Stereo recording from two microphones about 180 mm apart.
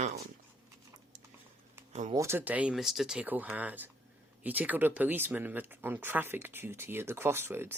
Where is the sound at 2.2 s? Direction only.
15° right (ahead or behind).